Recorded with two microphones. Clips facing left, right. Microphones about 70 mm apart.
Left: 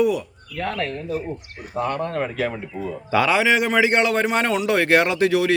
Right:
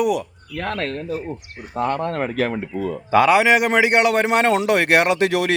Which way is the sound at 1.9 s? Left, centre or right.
Right.